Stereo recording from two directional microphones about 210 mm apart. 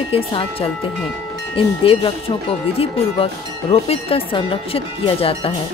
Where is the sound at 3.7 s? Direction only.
25° left (ahead or behind).